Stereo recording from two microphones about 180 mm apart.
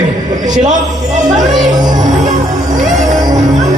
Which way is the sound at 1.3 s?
45° right (ahead or behind).